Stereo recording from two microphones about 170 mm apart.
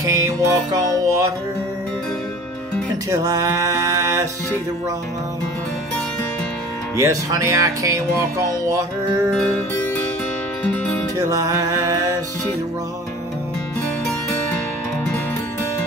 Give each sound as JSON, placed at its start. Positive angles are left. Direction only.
{"t": 0.0, "sound": "music", "side_deg": -20}
{"t": 3.1, "sound": "speech", "side_deg": -20}
{"t": 7.0, "sound": "speech", "side_deg": -20}
{"t": 10.6, "sound": "music", "side_deg": 10}
{"t": 11.1, "sound": "speech", "side_deg": -20}